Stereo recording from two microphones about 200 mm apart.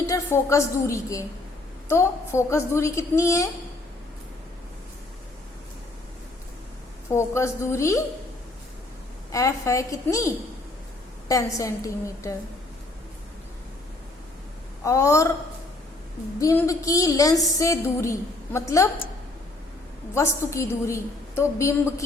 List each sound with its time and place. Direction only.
0.0 s a woman's voice: 15° left (ahead or behind)
7.1 s a woman's voice: 15° left (ahead or behind)
9.3 s a woman's voice: 15° left (ahead or behind)
14.8 s a woman's voice: 15° left (ahead or behind)
16.4 s a woman's voice: 15° left (ahead or behind)
20.1 s a woman's voice: 15° left (ahead or behind)